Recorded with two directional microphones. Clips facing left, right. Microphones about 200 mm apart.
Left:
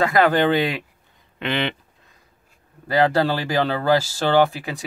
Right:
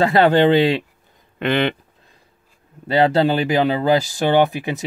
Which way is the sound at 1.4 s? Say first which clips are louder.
Right 5 dB; 50° right (ahead or behind).